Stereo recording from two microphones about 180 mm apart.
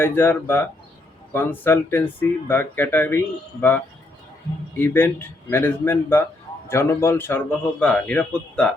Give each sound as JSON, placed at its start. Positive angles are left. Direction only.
{"t": 0.0, "sound": "a man's voice", "side_deg": 10}